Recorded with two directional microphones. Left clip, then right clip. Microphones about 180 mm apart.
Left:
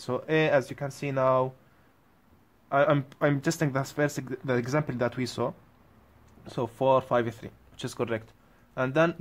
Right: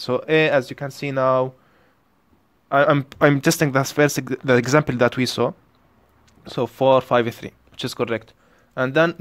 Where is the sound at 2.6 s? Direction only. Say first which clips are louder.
Right 7 dB; 30° right (ahead or behind).